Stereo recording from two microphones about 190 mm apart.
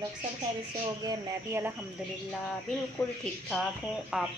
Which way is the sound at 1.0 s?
15° right (ahead or behind).